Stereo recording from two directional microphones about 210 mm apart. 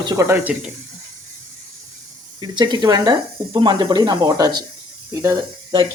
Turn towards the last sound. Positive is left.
turn(degrees=-15)  # may be behind; listen again after turning